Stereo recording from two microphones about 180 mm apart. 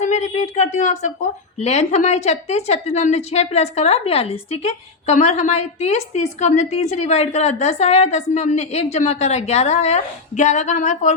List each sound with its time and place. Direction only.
0.0 s a woman's voice: 40° left (ahead or behind)